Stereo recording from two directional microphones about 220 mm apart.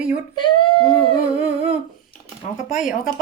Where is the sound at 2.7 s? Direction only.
Centre (ahead or behind).